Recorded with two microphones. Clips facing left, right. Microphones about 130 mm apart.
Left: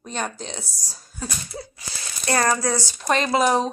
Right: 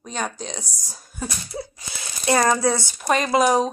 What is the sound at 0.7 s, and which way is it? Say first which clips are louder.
Speech: right 1 dB; 20° right (ahead or behind).